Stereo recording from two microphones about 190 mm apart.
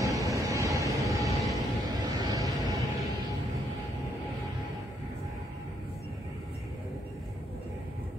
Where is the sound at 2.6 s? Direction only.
15° right (ahead or behind).